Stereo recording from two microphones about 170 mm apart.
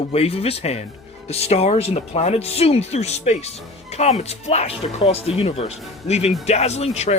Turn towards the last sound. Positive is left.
turn(degrees=40)  # may be behind; listen again after turning